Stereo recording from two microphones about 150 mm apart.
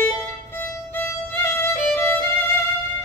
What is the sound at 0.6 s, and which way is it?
Violin, 15° left (ahead or behind).